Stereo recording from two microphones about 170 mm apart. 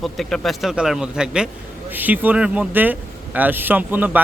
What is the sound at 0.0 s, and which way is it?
A man's voice, centre (ahead or behind).